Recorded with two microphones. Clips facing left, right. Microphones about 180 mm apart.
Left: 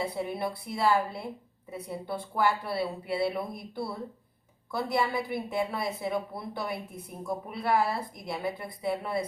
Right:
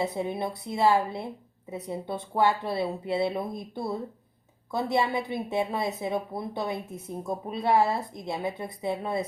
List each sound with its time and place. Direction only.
0.0 s a woman's voice: 20° right (ahead or behind)